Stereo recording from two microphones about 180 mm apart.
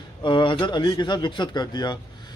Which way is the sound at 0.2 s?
25° left (ahead or behind).